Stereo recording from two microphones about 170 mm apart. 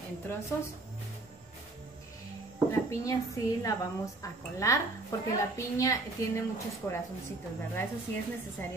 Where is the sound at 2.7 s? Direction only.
20° left (ahead or behind).